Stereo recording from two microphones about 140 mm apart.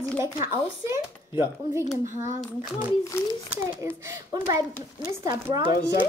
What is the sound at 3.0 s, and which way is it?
Speech, 20° left (ahead or behind).